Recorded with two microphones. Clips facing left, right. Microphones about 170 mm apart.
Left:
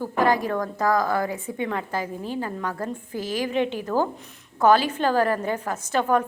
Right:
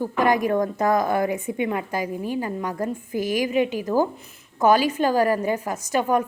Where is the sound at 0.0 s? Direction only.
15° right (ahead or behind).